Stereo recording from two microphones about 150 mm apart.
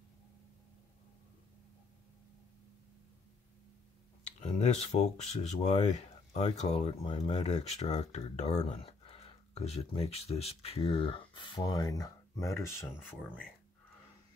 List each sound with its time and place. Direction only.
4.4 s speech: 45° left (ahead or behind); by 12.9 s 20° left (ahead or behind)